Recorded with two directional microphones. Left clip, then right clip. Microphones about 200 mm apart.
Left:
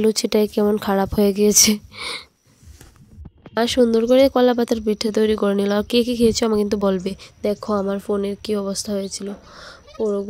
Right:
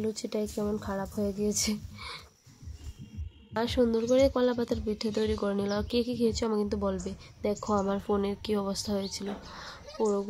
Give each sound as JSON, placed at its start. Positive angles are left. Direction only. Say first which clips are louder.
{"t": 0.0, "sound": "speech", "louder": "left 15 dB", "side_deg": 50}
{"t": 3.5, "sound": "speech", "louder": "left 10 dB", "side_deg": 40}